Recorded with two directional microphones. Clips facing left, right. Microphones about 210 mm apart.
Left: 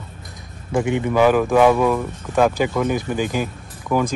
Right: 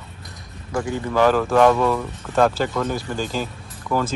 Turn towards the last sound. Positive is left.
turn(degrees=15)  # may be behind; listen again after turning